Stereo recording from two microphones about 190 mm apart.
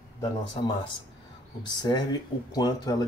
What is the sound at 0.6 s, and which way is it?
Speech, 30° left (ahead or behind).